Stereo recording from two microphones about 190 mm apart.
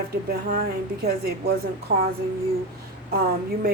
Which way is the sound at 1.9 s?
50° right (ahead or behind).